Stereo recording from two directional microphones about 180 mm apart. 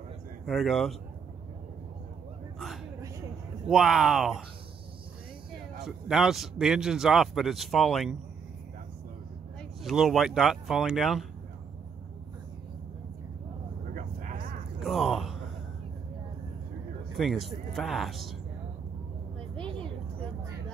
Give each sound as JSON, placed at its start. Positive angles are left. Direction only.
{"t": 0.5, "sound": "speech", "side_deg": 0}
{"t": 3.6, "sound": "speech", "side_deg": 0}
{"t": 5.9, "sound": "speech", "side_deg": 0}
{"t": 9.6, "sound": "speech", "side_deg": 0}
{"t": 13.9, "sound": "vehicle", "side_deg": -50}
{"t": 14.8, "sound": "a sound", "side_deg": 0}
{"t": 17.1, "sound": "speech", "side_deg": 0}
{"t": 19.5, "sound": "a sound", "side_deg": 5}